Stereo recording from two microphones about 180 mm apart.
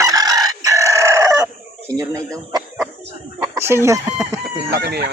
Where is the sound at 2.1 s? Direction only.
20° right (ahead or behind).